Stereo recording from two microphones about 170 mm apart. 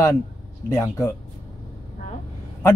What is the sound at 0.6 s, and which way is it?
Speech, 20° left (ahead or behind).